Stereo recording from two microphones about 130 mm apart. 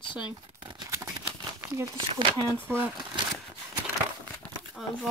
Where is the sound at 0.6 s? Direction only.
35° right (ahead or behind).